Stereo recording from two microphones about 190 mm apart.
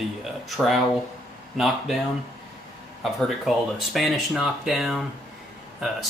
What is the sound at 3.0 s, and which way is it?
Speech, centre (ahead or behind).